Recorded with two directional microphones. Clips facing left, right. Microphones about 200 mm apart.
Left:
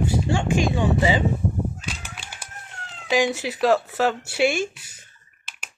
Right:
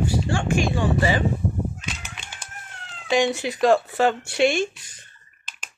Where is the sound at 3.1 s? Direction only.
Centre (ahead or behind).